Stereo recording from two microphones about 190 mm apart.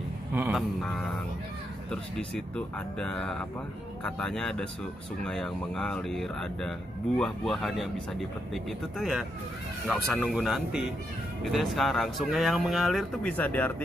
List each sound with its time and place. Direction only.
0.3 s speech: 5° right (ahead or behind)